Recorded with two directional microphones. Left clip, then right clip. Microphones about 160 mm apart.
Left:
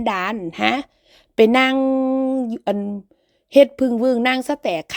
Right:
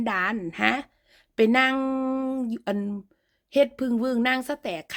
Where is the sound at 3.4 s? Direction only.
40° left (ahead or behind).